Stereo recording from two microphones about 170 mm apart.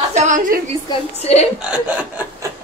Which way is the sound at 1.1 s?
40° left (ahead or behind).